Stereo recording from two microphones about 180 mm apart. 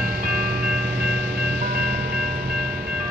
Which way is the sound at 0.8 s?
70° right (ahead or behind).